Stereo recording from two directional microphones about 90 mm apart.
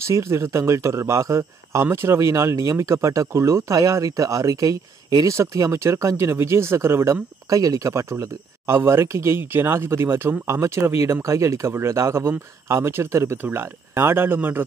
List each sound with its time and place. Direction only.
0.0 s speech: 30° right (ahead or behind)